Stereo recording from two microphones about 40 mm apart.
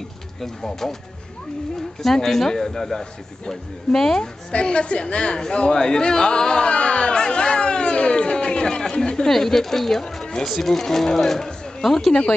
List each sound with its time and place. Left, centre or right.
0.4 s speech: centre
2.0 s speech: centre
4.5 s speech: left; by 12.1 s centre
12.1 s speech: left